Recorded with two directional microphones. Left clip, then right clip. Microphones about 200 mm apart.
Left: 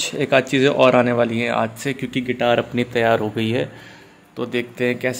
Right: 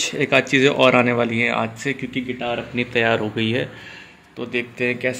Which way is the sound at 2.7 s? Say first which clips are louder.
Left 1 dB; centre (ahead or behind).